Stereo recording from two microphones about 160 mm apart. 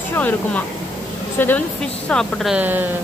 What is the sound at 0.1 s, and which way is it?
A woman's voice, 10° left (ahead or behind).